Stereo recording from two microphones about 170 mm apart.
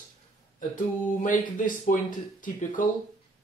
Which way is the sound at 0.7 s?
50° left (ahead or behind).